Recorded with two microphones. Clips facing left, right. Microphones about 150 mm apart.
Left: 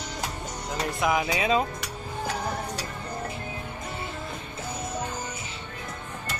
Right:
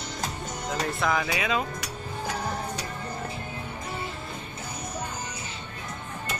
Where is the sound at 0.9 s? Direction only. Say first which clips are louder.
Left 4 dB; 15° left (ahead or behind).